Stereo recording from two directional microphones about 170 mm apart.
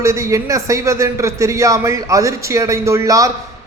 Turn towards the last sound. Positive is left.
turn(degrees=-20)  # may be behind; listen again after turning